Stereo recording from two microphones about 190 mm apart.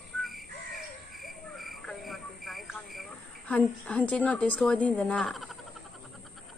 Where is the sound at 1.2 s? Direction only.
Centre (ahead or behind).